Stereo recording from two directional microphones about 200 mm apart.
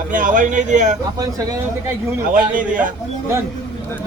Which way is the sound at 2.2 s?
45° right (ahead or behind).